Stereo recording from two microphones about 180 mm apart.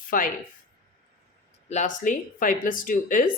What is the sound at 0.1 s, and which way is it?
Speech, 50° left (ahead or behind).